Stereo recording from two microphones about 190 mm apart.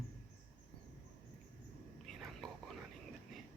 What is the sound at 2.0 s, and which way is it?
Whispering, centre (ahead or behind).